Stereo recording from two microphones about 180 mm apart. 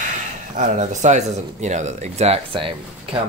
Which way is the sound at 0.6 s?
40° right (ahead or behind).